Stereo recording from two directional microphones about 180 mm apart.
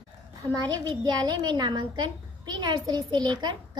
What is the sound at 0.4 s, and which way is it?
A woman's voice, 25° right (ahead or behind).